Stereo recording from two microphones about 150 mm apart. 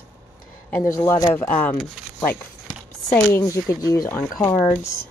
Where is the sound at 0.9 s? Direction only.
20° left (ahead or behind).